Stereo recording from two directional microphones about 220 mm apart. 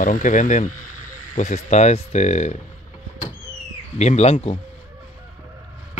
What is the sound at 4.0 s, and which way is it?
Speech, 30° left (ahead or behind).